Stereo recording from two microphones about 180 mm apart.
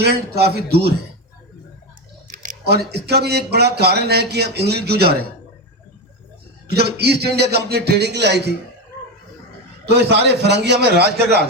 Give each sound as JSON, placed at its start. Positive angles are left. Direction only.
{"t": 0.0, "sound": "speech", "side_deg": -65}
{"t": 2.2, "sound": "a sound", "side_deg": -45}
{"t": 2.6, "sound": "speech", "side_deg": -65}
{"t": 6.7, "sound": "speech", "side_deg": -65}
{"t": 9.9, "sound": "a man's voice", "side_deg": -70}